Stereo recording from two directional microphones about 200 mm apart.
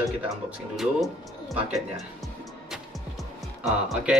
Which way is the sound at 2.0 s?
Centre (ahead or behind).